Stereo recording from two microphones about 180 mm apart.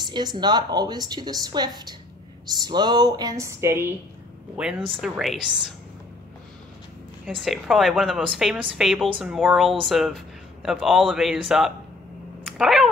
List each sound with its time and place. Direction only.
0.0 s a woman's voice: 25° right (ahead or behind); by 5.8 s centre (ahead or behind)
7.2 s a man's voice: centre (ahead or behind)